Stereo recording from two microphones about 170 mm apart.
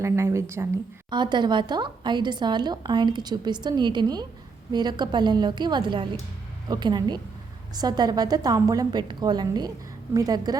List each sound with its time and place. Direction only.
0.0 s speech: 15° right (ahead or behind)
1.1 s speech: 25° right (ahead or behind)